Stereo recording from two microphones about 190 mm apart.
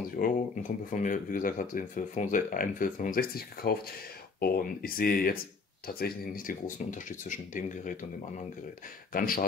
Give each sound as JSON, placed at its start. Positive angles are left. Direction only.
{"t": 0.1, "sound": "speech", "side_deg": 45}
{"t": 9.1, "sound": "speech", "side_deg": 50}